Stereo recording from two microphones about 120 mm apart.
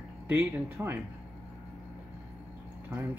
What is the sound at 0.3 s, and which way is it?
Speech, 20° right (ahead or behind).